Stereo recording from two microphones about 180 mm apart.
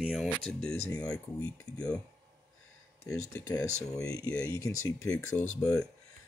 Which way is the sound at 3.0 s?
15° left (ahead or behind).